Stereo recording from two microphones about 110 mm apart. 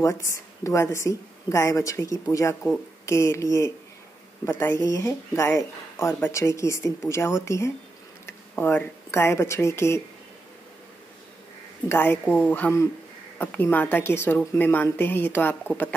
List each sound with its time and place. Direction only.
0.0 s speech: 30° left (ahead or behind)
4.5 s speech: 20° left (ahead or behind)
4.7 s speech: 30° left (ahead or behind)
11.9 s speech: 20° left (ahead or behind)